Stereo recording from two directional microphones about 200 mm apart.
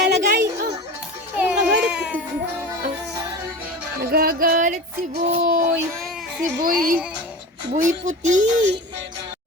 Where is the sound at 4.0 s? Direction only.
50° right (ahead or behind).